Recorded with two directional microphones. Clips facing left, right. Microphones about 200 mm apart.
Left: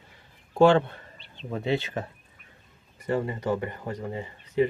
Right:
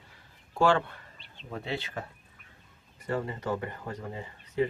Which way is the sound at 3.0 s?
20° left (ahead or behind).